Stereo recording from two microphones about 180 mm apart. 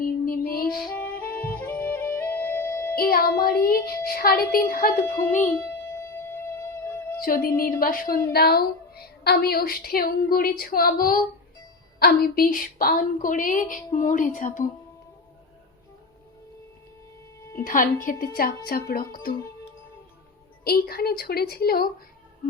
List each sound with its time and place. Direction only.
0.3 s music: 55° left (ahead or behind)
0.8 s music: 10° left (ahead or behind)
2.9 s a woman's voice: 55° left (ahead or behind)
5.0 s a child's voice: 10° left (ahead or behind)
6.0 s music: 15° left (ahead or behind)
7.2 s a woman's voice: 55° left (ahead or behind)
17.6 s a woman's voice: 50° left (ahead or behind)
20.7 s a woman's voice: 60° left (ahead or behind)